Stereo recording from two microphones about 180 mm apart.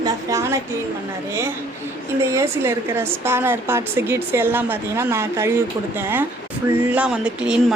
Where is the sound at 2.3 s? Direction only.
15° right (ahead or behind).